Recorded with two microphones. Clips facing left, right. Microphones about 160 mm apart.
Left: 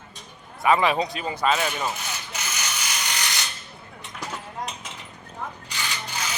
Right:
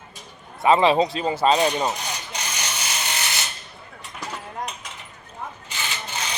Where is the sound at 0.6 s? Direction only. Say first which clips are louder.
Right 4 dB; 25° right (ahead or behind).